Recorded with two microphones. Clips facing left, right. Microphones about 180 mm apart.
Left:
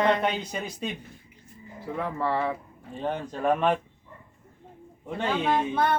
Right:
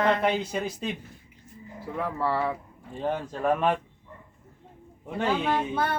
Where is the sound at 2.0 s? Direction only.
10° right (ahead or behind).